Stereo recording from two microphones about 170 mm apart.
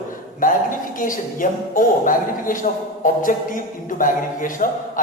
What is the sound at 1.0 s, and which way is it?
A man's voice, 50° left (ahead or behind).